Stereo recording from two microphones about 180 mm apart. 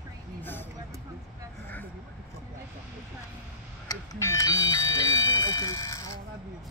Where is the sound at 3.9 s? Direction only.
20° left (ahead or behind).